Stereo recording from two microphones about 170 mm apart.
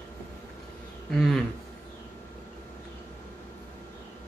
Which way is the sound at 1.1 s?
5° left (ahead or behind).